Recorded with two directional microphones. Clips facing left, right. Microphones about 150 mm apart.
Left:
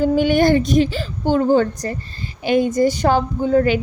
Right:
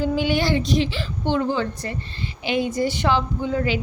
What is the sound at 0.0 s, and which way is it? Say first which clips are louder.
A woman's voice: left 7 dB; 50° left (ahead or behind).